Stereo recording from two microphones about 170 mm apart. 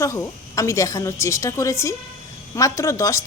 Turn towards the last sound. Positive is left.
turn(degrees=20)  # may be behind; listen again after turning